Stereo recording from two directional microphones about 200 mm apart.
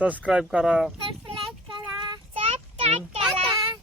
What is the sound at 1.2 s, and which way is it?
Child singing, 25° right (ahead or behind).